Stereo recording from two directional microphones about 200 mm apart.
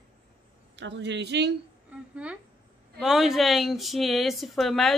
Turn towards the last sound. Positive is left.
turn(degrees=0)  # may be behind; listen again after turning